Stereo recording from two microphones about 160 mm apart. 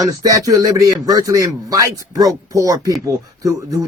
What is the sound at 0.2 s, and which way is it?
Speech, 25° right (ahead or behind).